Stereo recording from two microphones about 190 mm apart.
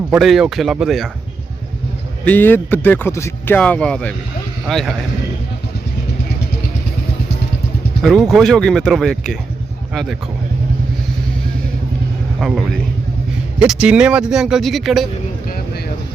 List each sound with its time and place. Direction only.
0.1 s speech: centre (ahead or behind)
2.2 s speech: 10° left (ahead or behind)
8.0 s speech: centre (ahead or behind)
12.4 s speech: centre (ahead or behind)
15.4 s vehicle: 55° left (ahead or behind)